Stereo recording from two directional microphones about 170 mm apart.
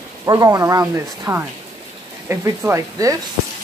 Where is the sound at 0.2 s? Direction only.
20° right (ahead or behind).